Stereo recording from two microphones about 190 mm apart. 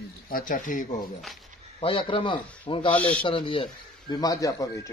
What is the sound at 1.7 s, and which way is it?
Speech, 30° left (ahead or behind).